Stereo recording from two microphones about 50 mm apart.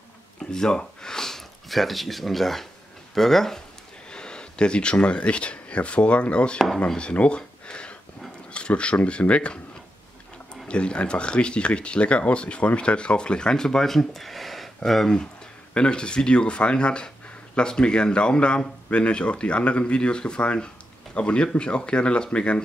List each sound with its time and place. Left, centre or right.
0.4 s speech: centre
7.0 s a sound: left
8.5 s speech: left
10.7 s speech: left